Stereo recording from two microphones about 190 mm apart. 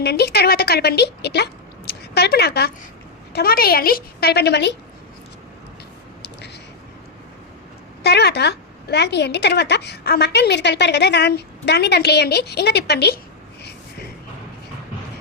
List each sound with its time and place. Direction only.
0.0 s a woman's voice: 60° left (ahead or behind)
8.0 s a woman's voice: 60° left (ahead or behind)